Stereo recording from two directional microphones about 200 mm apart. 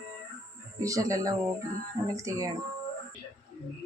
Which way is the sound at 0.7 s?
15° right (ahead or behind).